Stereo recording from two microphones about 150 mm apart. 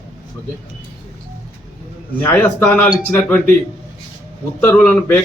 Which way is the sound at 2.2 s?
15° left (ahead or behind).